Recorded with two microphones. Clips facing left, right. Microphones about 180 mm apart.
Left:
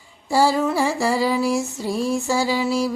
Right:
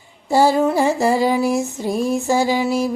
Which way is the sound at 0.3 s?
20° right (ahead or behind).